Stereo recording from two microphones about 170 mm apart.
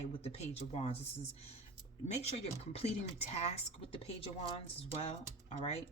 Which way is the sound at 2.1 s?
40° left (ahead or behind).